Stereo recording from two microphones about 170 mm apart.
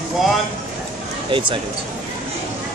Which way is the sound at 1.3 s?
30° right (ahead or behind).